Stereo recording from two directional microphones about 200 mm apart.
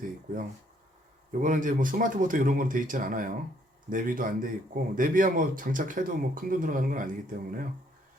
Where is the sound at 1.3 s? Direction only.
40° right (ahead or behind).